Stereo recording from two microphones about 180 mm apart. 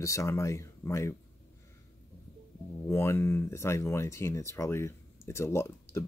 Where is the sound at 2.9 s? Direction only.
15° left (ahead or behind).